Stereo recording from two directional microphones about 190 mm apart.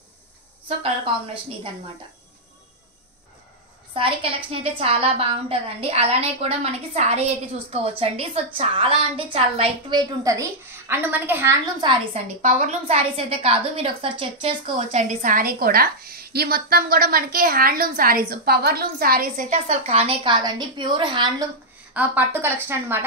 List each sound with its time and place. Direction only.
0.7 s a woman's voice: 30° right (ahead or behind)
3.9 s a woman's voice: 30° right (ahead or behind)
12.4 s a woman's voice: 40° right (ahead or behind)
21.9 s a woman's voice: 10° right (ahead or behind)